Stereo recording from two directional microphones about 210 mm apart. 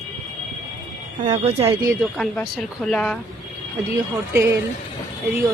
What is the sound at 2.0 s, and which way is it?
Speech, centre (ahead or behind).